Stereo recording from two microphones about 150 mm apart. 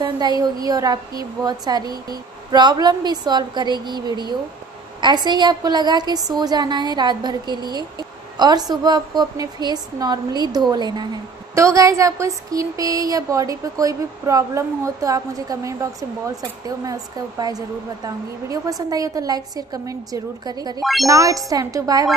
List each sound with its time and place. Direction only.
0.0 s speech: 25° right (ahead or behind)
20.8 s a child's voice: centre (ahead or behind)
21.1 s speech: 20° right (ahead or behind)